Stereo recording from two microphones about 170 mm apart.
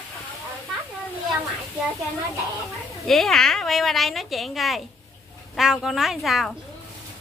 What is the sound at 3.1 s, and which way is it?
Speech, centre (ahead or behind).